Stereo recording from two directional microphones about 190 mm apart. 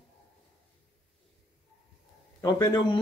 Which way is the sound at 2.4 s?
20° left (ahead or behind).